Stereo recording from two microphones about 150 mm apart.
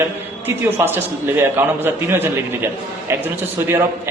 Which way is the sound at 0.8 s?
15° right (ahead or behind).